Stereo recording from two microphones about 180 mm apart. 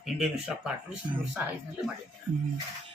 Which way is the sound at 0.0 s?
Centre (ahead or behind).